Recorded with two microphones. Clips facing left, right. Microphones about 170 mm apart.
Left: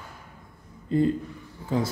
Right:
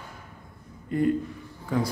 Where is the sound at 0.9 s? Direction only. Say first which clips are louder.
Left 1 dB; 25° left (ahead or behind).